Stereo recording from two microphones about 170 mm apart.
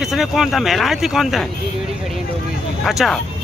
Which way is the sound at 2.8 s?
Centre (ahead or behind).